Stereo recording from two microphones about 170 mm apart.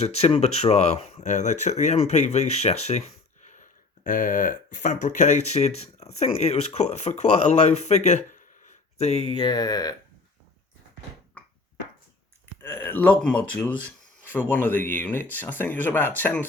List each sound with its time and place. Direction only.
0.0 s speech: 35° left (ahead or behind)
12.6 s speech: 15° left (ahead or behind)